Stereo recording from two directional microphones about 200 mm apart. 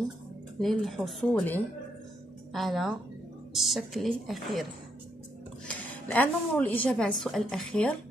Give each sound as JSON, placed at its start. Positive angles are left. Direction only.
{"t": 0.6, "sound": "a woman's voice", "side_deg": 0}
{"t": 5.7, "sound": "a woman's voice", "side_deg": 5}